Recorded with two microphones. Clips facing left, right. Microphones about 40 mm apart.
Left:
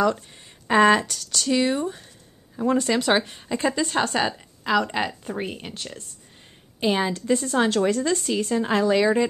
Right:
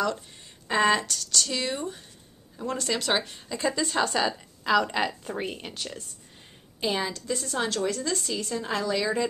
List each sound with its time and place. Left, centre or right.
0.7 s a woman's voice: centre; by 4.4 s left
4.4 s speech: centre
6.8 s a woman's voice: left